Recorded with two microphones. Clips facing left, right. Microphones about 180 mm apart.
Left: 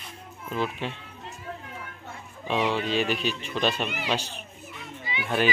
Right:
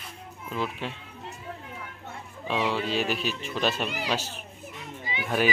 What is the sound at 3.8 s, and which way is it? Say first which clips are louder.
Speech: even; 35° right (ahead or behind).